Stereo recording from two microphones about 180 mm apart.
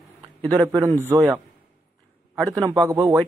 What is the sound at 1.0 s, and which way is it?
Speech, 10° right (ahead or behind).